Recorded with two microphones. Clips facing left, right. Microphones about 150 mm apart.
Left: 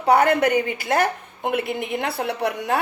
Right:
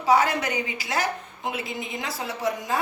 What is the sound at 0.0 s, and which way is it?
A woman's voice, 55° left (ahead or behind).